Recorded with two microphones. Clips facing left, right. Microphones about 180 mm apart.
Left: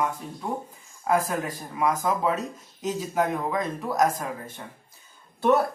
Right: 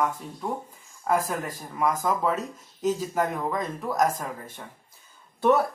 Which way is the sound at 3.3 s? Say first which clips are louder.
Left 2 dB; 5° left (ahead or behind).